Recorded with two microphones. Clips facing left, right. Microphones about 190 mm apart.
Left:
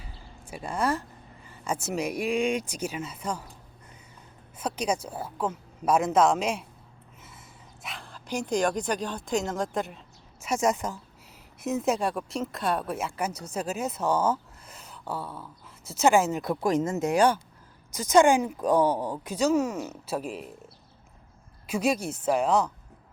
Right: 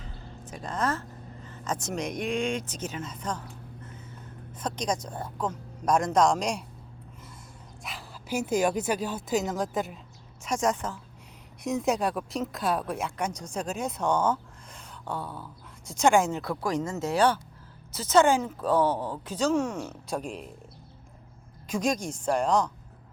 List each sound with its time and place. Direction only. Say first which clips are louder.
0.0 s speech: right 4 dB; 10° left (ahead or behind)
4.5 s a woman's voice: left 2 dB; 10° left (ahead or behind)
7.8 s a woman's voice: even; centre (ahead or behind)
16.4 s a woman's voice: left 4 dB; 20° left (ahead or behind); by 20.5 s 5° left (ahead or behind)
21.7 s a woman's voice: left 2 dB; 5° left (ahead or behind)